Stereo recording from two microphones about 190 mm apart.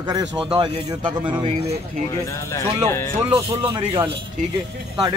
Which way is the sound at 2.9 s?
15° left (ahead or behind).